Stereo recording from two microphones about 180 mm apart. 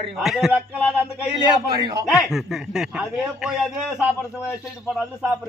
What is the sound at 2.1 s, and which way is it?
A man's voice, centre (ahead or behind).